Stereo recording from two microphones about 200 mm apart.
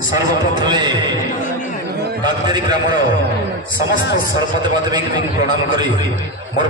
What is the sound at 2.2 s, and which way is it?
Speech, 20° right (ahead or behind).